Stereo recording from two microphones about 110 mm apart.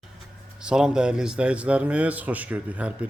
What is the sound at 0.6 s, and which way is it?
Speech, 10° right (ahead or behind).